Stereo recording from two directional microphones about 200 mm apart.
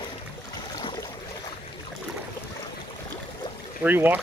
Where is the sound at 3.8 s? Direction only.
10° right (ahead or behind).